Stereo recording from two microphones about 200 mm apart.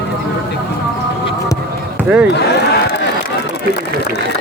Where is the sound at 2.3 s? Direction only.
55° left (ahead or behind).